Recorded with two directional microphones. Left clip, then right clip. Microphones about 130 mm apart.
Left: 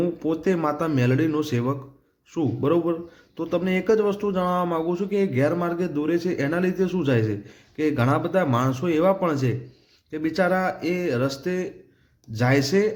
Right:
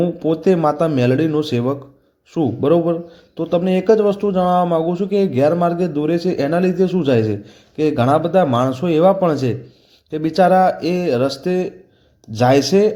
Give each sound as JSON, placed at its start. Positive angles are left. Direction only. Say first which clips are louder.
{"t": 0.0, "sound": "speech", "louder": "right 7 dB", "side_deg": -30}